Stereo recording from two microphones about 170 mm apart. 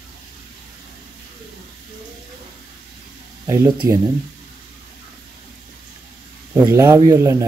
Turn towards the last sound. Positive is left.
turn(degrees=-15)  # may be behind; listen again after turning